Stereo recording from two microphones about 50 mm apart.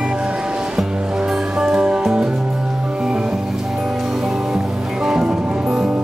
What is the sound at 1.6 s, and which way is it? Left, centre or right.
Music, centre.